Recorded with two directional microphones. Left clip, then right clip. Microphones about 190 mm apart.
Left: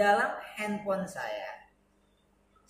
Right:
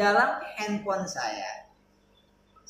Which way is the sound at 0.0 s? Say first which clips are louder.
Right 3 dB; 15° right (ahead or behind).